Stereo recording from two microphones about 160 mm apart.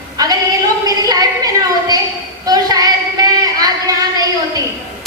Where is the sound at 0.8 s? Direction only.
25° right (ahead or behind).